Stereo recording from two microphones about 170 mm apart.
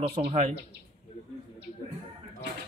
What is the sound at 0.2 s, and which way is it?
Speech, 40° right (ahead or behind).